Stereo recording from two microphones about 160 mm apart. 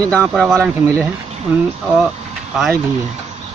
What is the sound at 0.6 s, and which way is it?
Speech, 15° right (ahead or behind).